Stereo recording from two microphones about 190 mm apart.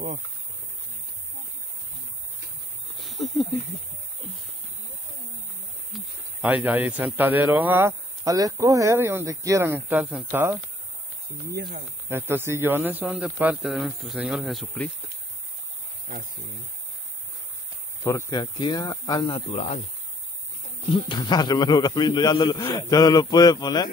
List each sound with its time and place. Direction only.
3.0 s a sound: centre (ahead or behind)
5.9 s a man's voice: 10° right (ahead or behind)
18.0 s a man's voice: 20° left (ahead or behind); by 19.8 s 35° left (ahead or behind)
20.9 s a man's voice: 25° left (ahead or behind)